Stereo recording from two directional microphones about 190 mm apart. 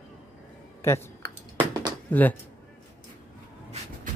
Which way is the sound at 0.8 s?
15° left (ahead or behind).